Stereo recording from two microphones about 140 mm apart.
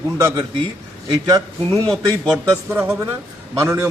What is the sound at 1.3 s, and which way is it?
Speech, 25° right (ahead or behind).